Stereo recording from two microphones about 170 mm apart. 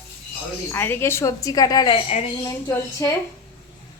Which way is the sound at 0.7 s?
15° left (ahead or behind).